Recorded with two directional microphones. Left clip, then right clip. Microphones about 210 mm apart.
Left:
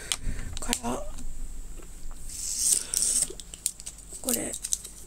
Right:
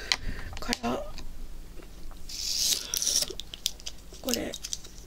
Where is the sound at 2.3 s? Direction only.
30° right (ahead or behind).